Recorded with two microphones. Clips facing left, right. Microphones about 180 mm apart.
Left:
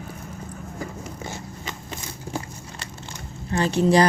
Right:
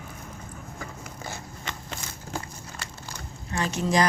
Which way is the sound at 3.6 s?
35° left (ahead or behind).